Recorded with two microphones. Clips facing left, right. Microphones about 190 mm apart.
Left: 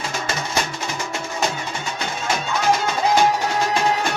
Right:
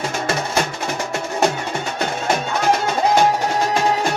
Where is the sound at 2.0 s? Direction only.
55° right (ahead or behind).